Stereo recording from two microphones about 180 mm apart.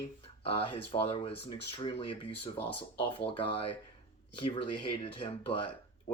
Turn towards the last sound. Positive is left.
turn(degrees=30)  # may be behind; listen again after turning